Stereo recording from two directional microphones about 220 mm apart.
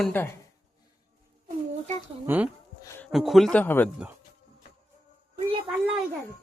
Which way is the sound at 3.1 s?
Centre (ahead or behind).